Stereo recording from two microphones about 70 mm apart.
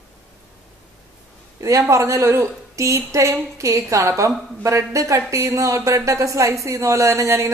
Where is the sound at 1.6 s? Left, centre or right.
Right.